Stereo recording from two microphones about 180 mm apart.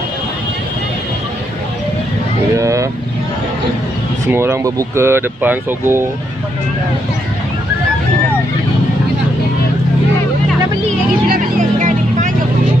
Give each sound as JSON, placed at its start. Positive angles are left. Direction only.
{"t": 2.5, "sound": "vehicle", "side_deg": -15}
{"t": 4.3, "sound": "speech", "side_deg": -15}
{"t": 11.2, "sound": "music", "side_deg": -50}